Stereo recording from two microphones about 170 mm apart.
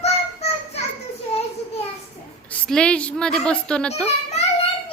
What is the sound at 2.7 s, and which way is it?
A woman's voice, 5° left (ahead or behind).